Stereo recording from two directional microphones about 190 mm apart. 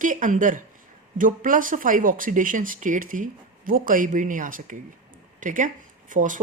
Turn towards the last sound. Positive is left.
turn(degrees=-40)  # may be behind; listen again after turning